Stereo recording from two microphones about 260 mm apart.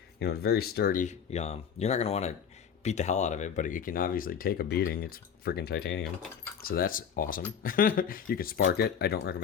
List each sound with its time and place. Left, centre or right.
0.2 s speech: left